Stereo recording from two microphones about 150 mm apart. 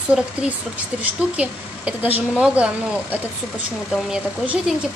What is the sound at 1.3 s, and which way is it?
A woman's voice, 10° right (ahead or behind).